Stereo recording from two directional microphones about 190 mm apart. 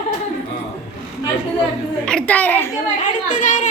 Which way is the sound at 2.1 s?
5° left (ahead or behind).